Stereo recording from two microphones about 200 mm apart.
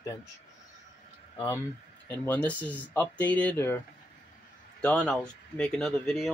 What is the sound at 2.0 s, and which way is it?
Speech, 10° left (ahead or behind).